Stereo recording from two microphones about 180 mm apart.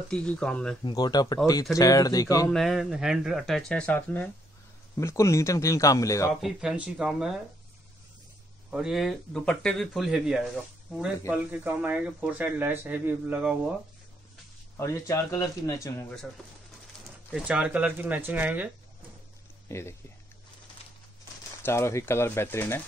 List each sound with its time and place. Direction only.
0.1 s speech: 5° left (ahead or behind)
0.8 s speech: 25° left (ahead or behind)
2.5 s speech: centre (ahead or behind); by 6.3 s 15° left (ahead or behind)
6.4 s speech: 5° right (ahead or behind)
8.6 s speech: 5° right (ahead or behind)
14.8 s speech: 15° left (ahead or behind)
17.3 s speech: 5° right (ahead or behind)
19.7 s speech: 15° left (ahead or behind)
21.6 s speech: 15° left (ahead or behind)